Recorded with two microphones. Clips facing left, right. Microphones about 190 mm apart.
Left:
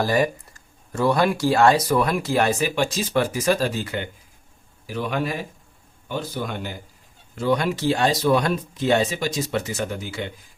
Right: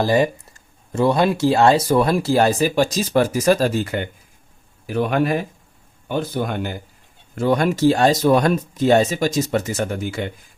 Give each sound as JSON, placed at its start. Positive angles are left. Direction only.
{"t": 0.0, "sound": "speech", "side_deg": -25}